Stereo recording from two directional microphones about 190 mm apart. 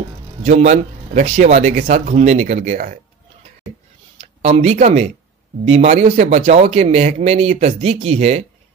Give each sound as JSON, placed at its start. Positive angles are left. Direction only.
{"t": 0.4, "sound": "speech", "side_deg": -40}
{"t": 4.2, "sound": "speech", "side_deg": -35}